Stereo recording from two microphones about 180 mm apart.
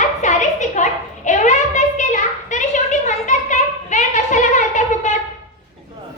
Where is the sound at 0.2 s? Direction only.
40° left (ahead or behind).